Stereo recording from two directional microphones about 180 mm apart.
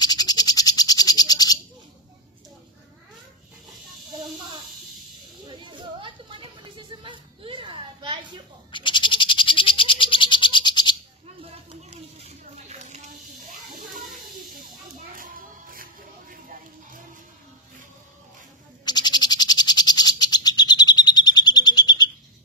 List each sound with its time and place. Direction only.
0.0 s frog: 20° left (ahead or behind)
5.5 s a sound: 25° right (ahead or behind)
8.7 s frog: 25° left (ahead or behind)
11.9 s snake: 40° right (ahead or behind)
15.1 s music: 50° right (ahead or behind)
18.9 s bird: 25° left (ahead or behind)